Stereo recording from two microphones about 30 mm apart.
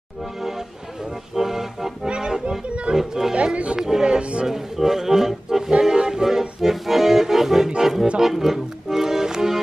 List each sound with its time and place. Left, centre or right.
1.3 s music: centre
2.0 s accordion: right
3.0 s music: centre
4.2 s music: right
4.5 s music: centre
5.7 s music: right
6.6 s accordion: centre
7.8 s music: centre
8.2 s accordion: centre